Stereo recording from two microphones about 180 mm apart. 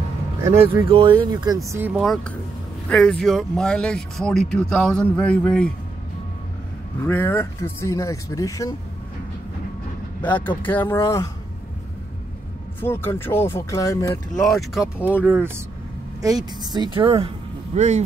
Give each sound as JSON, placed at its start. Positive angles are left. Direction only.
{"t": 0.8, "sound": "speech", "side_deg": -30}
{"t": 2.9, "sound": "a man's voice", "side_deg": 5}
{"t": 7.0, "sound": "speech", "side_deg": 10}
{"t": 10.2, "sound": "speech", "side_deg": 10}
{"t": 12.8, "sound": "speech", "side_deg": 10}
{"t": 14.5, "sound": "a man's voice", "side_deg": 0}
{"t": 15.0, "sound": "speech", "side_deg": 10}
{"t": 15.2, "sound": "speech", "side_deg": -10}